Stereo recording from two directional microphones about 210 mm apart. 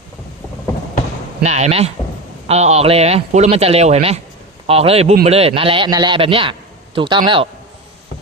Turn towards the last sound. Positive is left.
turn(degrees=-20)  # may be behind; listen again after turning